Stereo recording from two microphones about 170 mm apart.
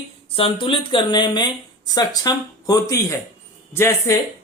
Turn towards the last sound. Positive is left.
turn(degrees=15)  # may be behind; listen again after turning